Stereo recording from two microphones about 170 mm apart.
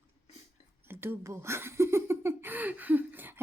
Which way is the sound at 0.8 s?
15° right (ahead or behind).